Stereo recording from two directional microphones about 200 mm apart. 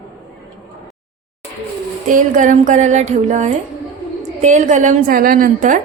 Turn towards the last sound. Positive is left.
turn(degrees=-40)  # may be behind; listen again after turning